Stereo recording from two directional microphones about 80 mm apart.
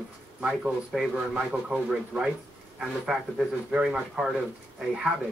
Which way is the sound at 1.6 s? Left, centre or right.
Centre.